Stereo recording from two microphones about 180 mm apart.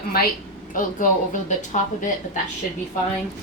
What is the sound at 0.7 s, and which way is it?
Speech, 50° left (ahead or behind).